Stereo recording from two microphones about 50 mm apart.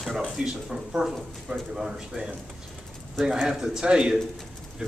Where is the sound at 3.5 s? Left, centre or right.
Centre.